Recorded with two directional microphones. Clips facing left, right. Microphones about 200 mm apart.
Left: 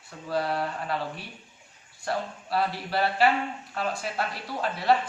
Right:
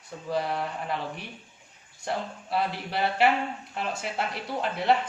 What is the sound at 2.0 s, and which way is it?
Speech, 20° right (ahead or behind).